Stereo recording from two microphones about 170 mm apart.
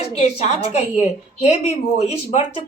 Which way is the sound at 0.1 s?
40° left (ahead or behind).